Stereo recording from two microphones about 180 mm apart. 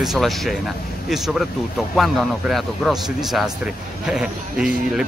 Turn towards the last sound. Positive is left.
turn(degrees=-5)  # may be behind; listen again after turning